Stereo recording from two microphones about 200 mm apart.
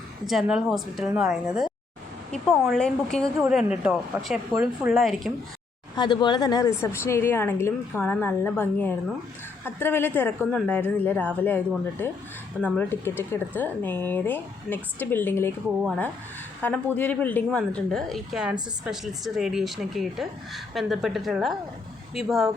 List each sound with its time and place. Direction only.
0.3 s speech: centre (ahead or behind)
6.0 s speech: 20° left (ahead or behind)
16.6 s speech: 10° left (ahead or behind)